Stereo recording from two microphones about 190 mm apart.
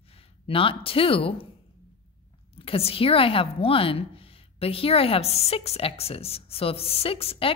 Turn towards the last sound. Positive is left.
turn(degrees=30)  # may be behind; listen again after turning